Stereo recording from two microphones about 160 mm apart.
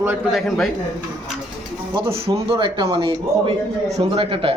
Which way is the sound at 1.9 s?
30° right (ahead or behind).